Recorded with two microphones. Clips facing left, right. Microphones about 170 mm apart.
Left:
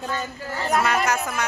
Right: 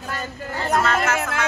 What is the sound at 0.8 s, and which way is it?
Speech, 15° left (ahead or behind).